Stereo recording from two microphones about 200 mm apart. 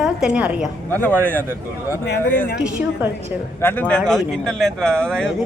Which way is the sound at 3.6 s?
10° left (ahead or behind).